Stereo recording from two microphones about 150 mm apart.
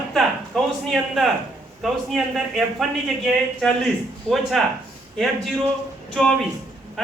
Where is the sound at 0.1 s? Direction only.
Centre (ahead or behind).